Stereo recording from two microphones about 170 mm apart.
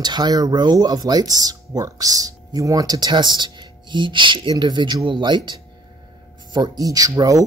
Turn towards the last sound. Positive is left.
turn(degrees=-20)  # may be behind; listen again after turning